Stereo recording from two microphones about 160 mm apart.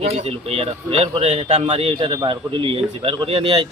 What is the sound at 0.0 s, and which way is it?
Speech, 40° right (ahead or behind).